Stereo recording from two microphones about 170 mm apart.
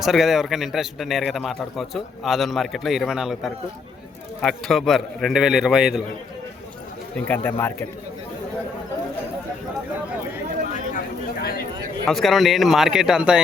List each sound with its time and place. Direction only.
0.0 s a man's voice: centre (ahead or behind)
7.3 s speech: 10° left (ahead or behind)
10.9 s a sound: 60° left (ahead or behind)
12.0 s a man's voice: centre (ahead or behind)